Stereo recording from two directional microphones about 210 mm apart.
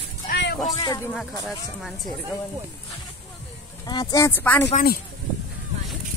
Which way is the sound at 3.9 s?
15° left (ahead or behind).